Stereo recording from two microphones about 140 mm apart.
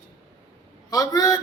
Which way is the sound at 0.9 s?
25° left (ahead or behind).